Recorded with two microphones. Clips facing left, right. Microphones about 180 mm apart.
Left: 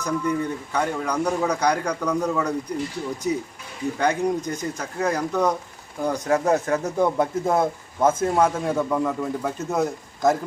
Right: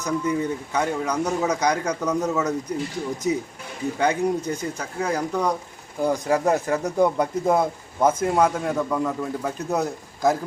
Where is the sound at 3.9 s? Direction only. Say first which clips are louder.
Even; 10° right (ahead or behind).